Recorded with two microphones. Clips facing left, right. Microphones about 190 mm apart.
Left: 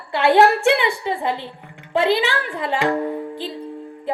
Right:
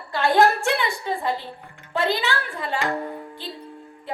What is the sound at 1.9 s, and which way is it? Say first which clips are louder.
Speech: left 5 dB; 90° left.